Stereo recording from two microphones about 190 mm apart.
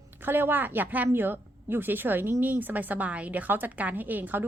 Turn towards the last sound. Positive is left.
turn(degrees=-10)  # may be behind; listen again after turning